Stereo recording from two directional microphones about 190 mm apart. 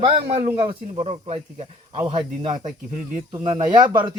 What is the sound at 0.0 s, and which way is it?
Speech, 30° right (ahead or behind).